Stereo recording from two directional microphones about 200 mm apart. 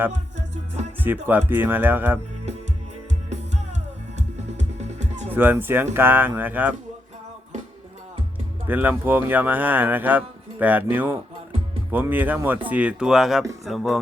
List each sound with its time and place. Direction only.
0.1 s music: 35° right (ahead or behind)
1.0 s speech: 10° right (ahead or behind)
4.4 s music: 35° right (ahead or behind)
5.3 s speech: 10° right (ahead or behind)
8.6 s speech: 10° right (ahead or behind)